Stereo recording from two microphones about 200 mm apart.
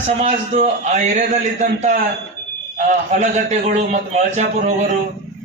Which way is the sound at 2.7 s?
35° right (ahead or behind).